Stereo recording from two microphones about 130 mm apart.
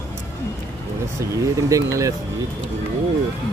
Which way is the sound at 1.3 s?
25° right (ahead or behind).